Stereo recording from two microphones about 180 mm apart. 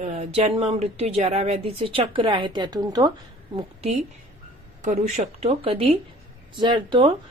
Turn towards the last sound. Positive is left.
turn(degrees=-25)  # may be behind; listen again after turning